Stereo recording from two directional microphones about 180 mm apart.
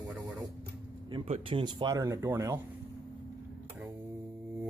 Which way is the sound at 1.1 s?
30° right (ahead or behind).